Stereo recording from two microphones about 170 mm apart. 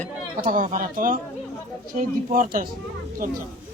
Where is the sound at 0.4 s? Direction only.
50° right (ahead or behind).